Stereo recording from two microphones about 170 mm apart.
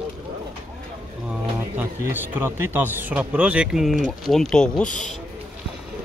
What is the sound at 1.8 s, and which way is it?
Speech, 10° right (ahead or behind).